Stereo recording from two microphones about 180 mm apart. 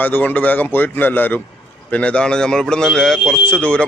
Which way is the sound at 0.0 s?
10° left (ahead or behind).